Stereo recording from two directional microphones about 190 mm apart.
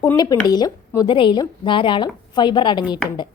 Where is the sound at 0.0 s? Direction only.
20° left (ahead or behind).